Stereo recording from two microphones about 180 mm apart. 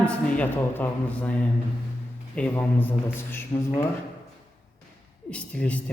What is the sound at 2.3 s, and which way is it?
A man's voice, 10° left (ahead or behind).